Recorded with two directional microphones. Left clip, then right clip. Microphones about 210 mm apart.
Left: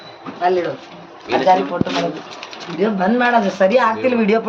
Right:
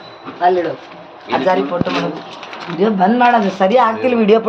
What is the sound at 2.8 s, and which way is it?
Speech, 15° right (ahead or behind).